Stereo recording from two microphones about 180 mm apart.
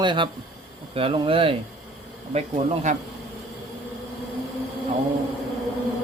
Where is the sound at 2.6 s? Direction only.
40° right (ahead or behind).